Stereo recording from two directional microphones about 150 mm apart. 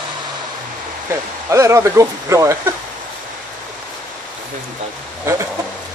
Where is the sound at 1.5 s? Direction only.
20° right (ahead or behind).